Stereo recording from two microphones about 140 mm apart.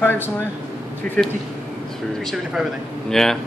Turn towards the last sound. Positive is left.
turn(degrees=5)  # may be behind; listen again after turning